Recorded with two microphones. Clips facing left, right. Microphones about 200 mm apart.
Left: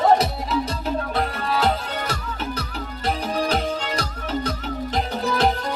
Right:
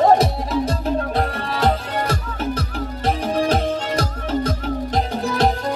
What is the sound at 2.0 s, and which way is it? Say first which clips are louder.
Music: right 5 dB; 45° right (ahead or behind).